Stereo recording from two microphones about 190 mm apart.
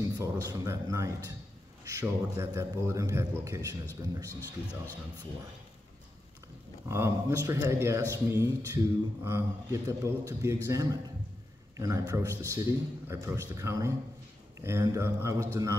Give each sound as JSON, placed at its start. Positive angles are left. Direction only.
{"t": 0.2, "sound": "speech", "side_deg": -15}
{"t": 6.9, "sound": "speech", "side_deg": -15}